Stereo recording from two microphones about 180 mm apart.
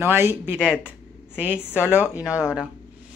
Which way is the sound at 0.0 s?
15° right (ahead or behind).